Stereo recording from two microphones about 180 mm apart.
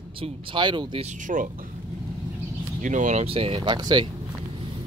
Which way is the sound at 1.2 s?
45° right (ahead or behind).